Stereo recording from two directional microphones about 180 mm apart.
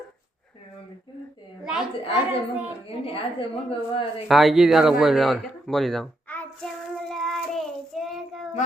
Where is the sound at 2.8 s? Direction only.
30° left (ahead or behind).